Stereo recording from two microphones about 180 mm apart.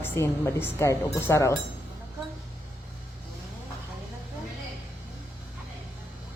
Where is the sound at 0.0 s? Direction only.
15° left (ahead or behind).